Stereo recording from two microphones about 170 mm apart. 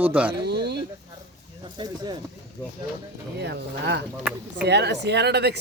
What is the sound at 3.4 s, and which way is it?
Speech, 85° right.